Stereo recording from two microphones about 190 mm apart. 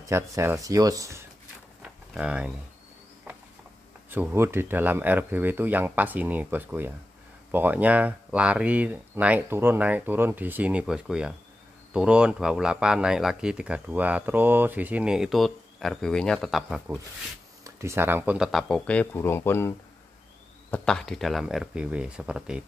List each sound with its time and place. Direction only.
0.0 s speech: 15° right (ahead or behind)
1.8 s a sound: 5° right (ahead or behind)
4.1 s speech: 10° right (ahead or behind); by 19.7 s 10° left (ahead or behind)
20.7 s speech: 5° left (ahead or behind)